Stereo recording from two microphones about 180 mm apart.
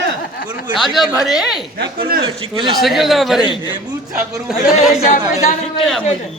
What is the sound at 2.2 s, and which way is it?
Speech, 30° right (ahead or behind).